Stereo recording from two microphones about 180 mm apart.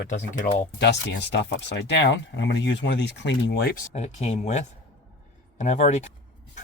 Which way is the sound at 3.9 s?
40° left (ahead or behind).